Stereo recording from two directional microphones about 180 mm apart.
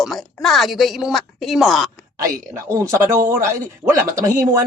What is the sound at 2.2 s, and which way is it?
A woman's voice, 20° right (ahead or behind).